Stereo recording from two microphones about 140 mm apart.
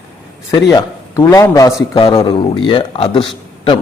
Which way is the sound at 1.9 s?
40° left (ahead or behind).